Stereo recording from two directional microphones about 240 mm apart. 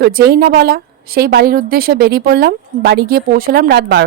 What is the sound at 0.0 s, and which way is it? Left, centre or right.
A woman's voice, right.